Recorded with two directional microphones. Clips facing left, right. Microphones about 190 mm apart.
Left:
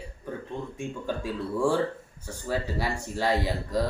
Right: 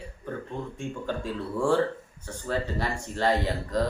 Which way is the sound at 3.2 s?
10° left (ahead or behind).